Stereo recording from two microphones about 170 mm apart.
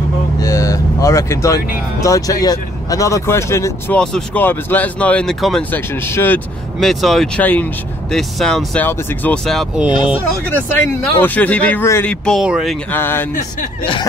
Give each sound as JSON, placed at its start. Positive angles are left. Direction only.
{"t": 0.4, "sound": "speech", "side_deg": 20}
{"t": 4.0, "sound": "speech", "side_deg": 5}
{"t": 6.8, "sound": "speech", "side_deg": 0}
{"t": 10.5, "sound": "speech", "side_deg": 10}
{"t": 12.9, "sound": "speech", "side_deg": 10}